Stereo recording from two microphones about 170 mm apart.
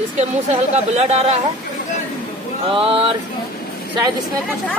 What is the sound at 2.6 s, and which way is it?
Speech, 35° right (ahead or behind).